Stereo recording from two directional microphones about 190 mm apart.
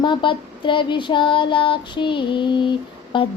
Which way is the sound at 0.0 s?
25° left (ahead or behind).